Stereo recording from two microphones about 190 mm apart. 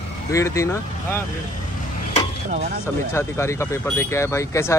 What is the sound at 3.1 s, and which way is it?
Speech, 15° left (ahead or behind).